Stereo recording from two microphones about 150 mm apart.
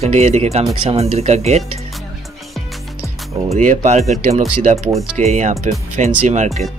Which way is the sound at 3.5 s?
55° right (ahead or behind).